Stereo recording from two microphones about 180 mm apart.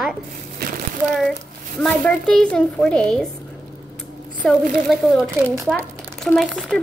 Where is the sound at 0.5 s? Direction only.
55° right (ahead or behind).